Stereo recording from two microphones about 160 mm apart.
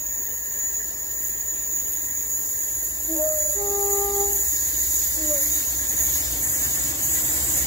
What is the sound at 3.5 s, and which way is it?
Music, 20° left (ahead or behind).